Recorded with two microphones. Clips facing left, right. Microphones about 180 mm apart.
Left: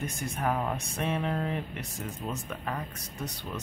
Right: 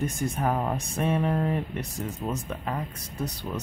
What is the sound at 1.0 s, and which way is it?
Speech, 40° right (ahead or behind).